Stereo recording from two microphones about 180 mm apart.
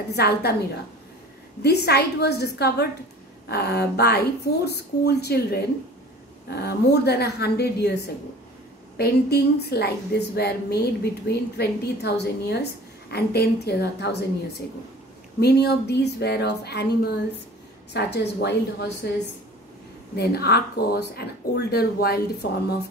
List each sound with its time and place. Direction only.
0.1 s a woman's voice: 65° left (ahead or behind)
1.6 s a woman's voice: 65° left (ahead or behind)
15.4 s a woman's voice: 65° left (ahead or behind)
20.2 s a woman's voice: 65° left (ahead or behind)